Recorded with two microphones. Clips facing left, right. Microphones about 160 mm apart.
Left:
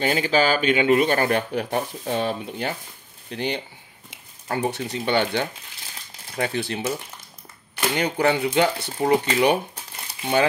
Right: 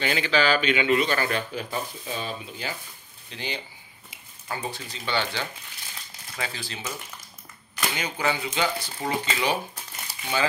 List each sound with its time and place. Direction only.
0.0 s speech: 45° left (ahead or behind)
4.5 s speech: 70° left (ahead or behind)
7.9 s speech: 60° left (ahead or behind)